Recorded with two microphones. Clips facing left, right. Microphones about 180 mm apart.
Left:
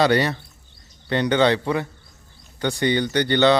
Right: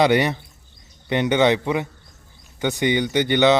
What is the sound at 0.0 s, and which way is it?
A man's voice, 20° right (ahead or behind).